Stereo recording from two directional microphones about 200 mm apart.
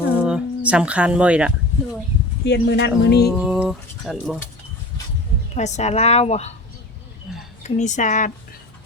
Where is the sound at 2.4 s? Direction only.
60° left (ahead or behind).